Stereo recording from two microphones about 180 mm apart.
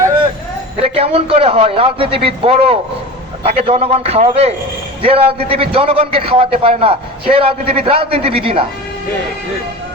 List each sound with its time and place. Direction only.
0.8 s a man's voice: 35° right (ahead or behind)